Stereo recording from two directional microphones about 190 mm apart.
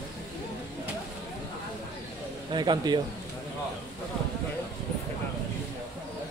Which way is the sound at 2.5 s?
25° right (ahead or behind).